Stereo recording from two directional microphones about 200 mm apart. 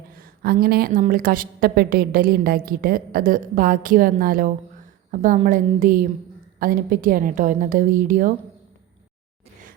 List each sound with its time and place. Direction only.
0.1 s a woman's voice: 45° right (ahead or behind)